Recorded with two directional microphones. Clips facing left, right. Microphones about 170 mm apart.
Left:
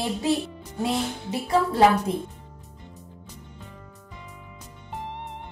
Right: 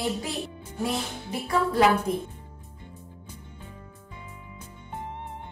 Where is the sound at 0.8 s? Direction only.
25° left (ahead or behind).